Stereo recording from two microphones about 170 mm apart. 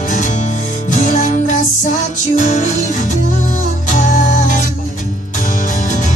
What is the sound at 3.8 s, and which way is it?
Music, 50° left (ahead or behind).